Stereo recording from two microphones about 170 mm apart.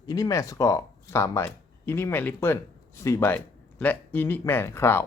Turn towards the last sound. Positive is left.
turn(degrees=15)  # may be behind; listen again after turning